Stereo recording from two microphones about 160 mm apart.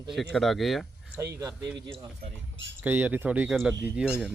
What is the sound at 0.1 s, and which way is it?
Speech, centre (ahead or behind).